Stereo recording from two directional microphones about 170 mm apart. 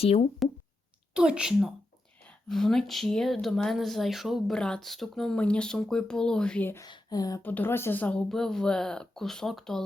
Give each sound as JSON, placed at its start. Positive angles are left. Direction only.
{"t": 0.0, "sound": "speech", "side_deg": 35}
{"t": 1.1, "sound": "speech", "side_deg": -5}
{"t": 6.8, "sound": "speech", "side_deg": 25}
{"t": 7.4, "sound": "speech", "side_deg": 10}